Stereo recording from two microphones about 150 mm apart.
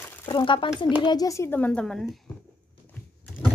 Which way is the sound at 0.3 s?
35° left (ahead or behind).